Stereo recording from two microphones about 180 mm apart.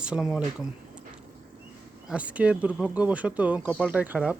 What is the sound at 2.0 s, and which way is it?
Speech, 5° right (ahead or behind).